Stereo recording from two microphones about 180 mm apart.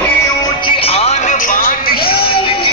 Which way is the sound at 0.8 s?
35° left (ahead or behind).